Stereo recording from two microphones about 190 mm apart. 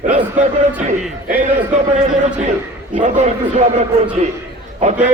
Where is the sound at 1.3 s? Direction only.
40° right (ahead or behind).